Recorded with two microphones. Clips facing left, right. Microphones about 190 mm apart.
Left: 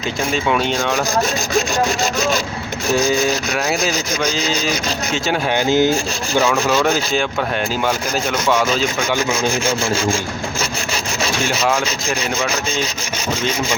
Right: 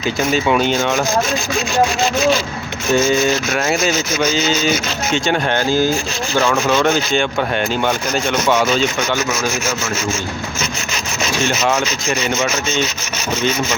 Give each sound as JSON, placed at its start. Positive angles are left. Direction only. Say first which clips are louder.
{"t": 0.2, "sound": "speech", "louder": "right 3 dB", "side_deg": -5}
{"t": 2.9, "sound": "speech", "louder": "right 2 dB", "side_deg": 0}
{"t": 5.5, "sound": "rub", "louder": "left 4 dB", "side_deg": 20}
{"t": 6.4, "sound": "speech", "louder": "right 1 dB", "side_deg": 0}
{"t": 9.3, "sound": "rub", "louder": "left 2 dB", "side_deg": 30}
{"t": 11.7, "sound": "speech", "louder": "right 1 dB", "side_deg": 0}